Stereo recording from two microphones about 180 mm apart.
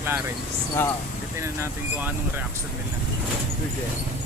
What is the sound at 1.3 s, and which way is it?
Speech, 15° right (ahead or behind).